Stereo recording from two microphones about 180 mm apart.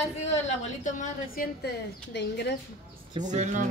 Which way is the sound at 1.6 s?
70° left (ahead or behind).